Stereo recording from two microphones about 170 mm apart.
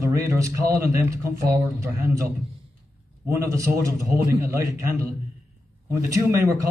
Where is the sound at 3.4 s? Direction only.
20° right (ahead or behind).